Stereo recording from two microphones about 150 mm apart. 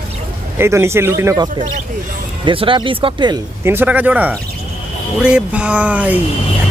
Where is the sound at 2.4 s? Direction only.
35° right (ahead or behind).